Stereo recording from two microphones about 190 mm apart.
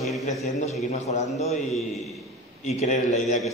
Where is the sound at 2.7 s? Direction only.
35° left (ahead or behind).